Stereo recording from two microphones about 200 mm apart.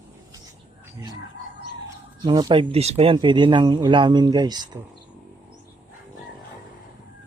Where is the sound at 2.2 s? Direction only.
20° right (ahead or behind).